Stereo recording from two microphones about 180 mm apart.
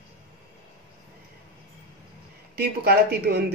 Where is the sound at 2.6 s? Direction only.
60° right (ahead or behind).